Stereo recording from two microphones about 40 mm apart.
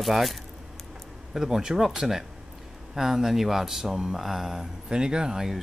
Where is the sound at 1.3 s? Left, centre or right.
Centre.